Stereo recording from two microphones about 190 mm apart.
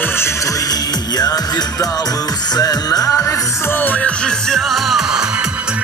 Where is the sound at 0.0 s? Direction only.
10° left (ahead or behind); by 5.5 s 5° right (ahead or behind).